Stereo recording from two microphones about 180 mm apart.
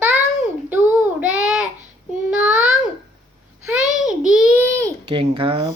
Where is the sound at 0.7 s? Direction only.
10° right (ahead or behind).